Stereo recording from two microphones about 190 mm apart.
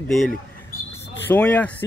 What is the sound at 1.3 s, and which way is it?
Speech, 5° left (ahead or behind).